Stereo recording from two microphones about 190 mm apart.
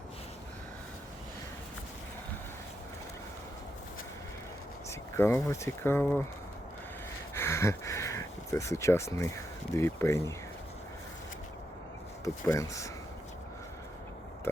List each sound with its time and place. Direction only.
4.9 s speech: 15° left (ahead or behind)
7.3 s speech: 15° left (ahead or behind)
12.2 s speech: 15° left (ahead or behind)
14.5 s pig: 10° left (ahead or behind)